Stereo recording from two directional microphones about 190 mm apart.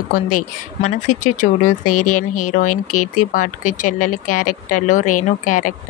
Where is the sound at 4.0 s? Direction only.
45° left (ahead or behind).